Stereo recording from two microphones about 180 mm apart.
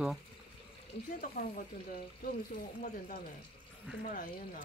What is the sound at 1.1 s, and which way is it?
Speech, 55° left (ahead or behind).